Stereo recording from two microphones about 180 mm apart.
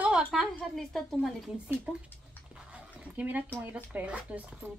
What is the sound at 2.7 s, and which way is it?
Dog, 10° right (ahead or behind).